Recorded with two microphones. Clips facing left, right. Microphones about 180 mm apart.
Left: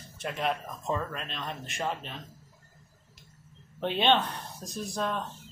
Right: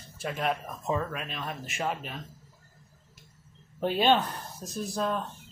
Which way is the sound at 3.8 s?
5° right (ahead or behind).